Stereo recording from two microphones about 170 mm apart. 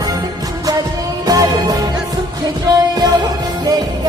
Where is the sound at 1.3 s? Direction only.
20° right (ahead or behind).